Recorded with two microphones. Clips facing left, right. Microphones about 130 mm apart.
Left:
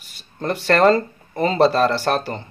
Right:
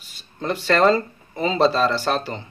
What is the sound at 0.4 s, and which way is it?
A man's voice, 55° left (ahead or behind).